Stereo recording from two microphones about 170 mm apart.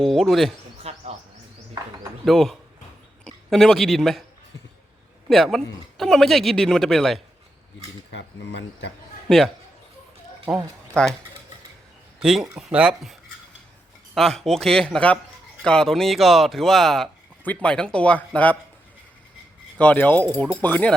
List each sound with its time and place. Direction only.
0.0 s a man's voice: centre (ahead or behind)
0.8 s a sound: 40° right (ahead or behind)
2.2 s a man's voice: centre (ahead or behind)
5.3 s a man's voice: centre (ahead or behind)
8.1 s speech: 90° left
11.0 s a man's voice: 5° left (ahead or behind)
12.2 s a man's voice: 5° right (ahead or behind)
14.2 s a man's voice: centre (ahead or behind)
19.8 s speech: 10° left (ahead or behind)